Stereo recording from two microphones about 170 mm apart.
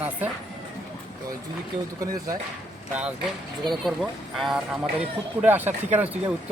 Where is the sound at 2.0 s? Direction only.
20° right (ahead or behind).